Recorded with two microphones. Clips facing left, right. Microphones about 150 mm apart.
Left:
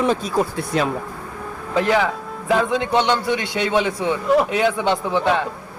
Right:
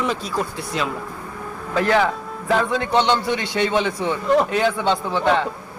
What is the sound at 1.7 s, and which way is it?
A man's voice, 15° left (ahead or behind).